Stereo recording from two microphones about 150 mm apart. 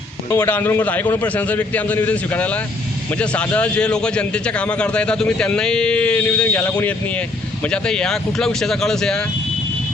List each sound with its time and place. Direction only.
0.3 s a man's voice: 15° left (ahead or behind)